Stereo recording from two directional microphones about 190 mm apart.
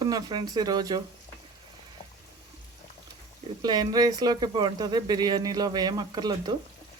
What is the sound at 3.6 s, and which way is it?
Speech, 20° right (ahead or behind).